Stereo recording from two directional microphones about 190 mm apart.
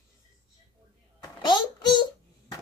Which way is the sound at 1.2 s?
25° left (ahead or behind).